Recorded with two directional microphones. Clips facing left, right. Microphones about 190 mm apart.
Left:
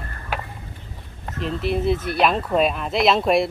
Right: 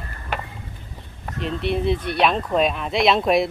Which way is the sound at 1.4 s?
Centre (ahead or behind).